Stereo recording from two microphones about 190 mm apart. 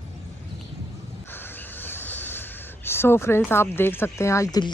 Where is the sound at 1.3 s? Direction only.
10° left (ahead or behind).